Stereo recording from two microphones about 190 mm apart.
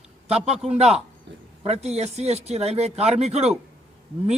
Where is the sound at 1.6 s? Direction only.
35° right (ahead or behind).